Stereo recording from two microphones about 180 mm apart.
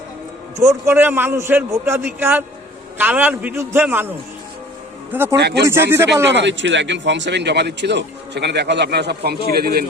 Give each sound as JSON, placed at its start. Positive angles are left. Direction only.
{"t": 0.5, "sound": "a man's voice", "side_deg": -15}
{"t": 5.1, "sound": "a man's voice", "side_deg": -15}
{"t": 5.4, "sound": "a man's voice", "side_deg": -70}
{"t": 5.6, "sound": "a man's voice", "side_deg": -15}
{"t": 6.2, "sound": "a man's voice", "side_deg": -80}